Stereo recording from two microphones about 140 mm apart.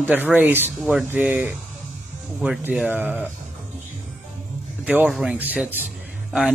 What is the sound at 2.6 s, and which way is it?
Speech, 10° right (ahead or behind).